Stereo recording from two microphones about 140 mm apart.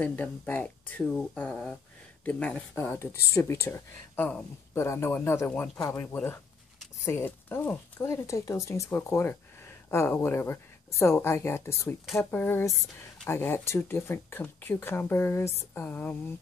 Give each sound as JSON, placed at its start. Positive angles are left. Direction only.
{"t": 0.0, "sound": "speech", "side_deg": 10}